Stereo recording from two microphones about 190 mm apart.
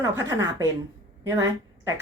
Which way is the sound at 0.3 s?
15° right (ahead or behind).